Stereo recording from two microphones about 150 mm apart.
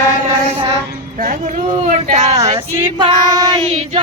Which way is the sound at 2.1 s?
55° right (ahead or behind).